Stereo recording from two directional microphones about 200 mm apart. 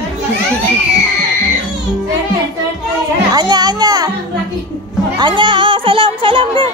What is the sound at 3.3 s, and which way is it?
Children playing, 20° right (ahead or behind).